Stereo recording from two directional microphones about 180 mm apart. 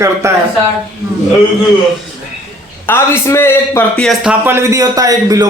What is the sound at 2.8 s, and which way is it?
A man's voice, 15° left (ahead or behind).